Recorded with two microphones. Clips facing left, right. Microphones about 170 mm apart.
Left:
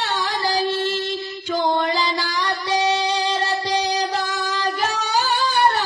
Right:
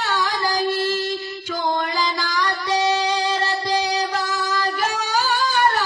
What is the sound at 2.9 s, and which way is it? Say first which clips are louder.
Music: even; 10° right (ahead or behind).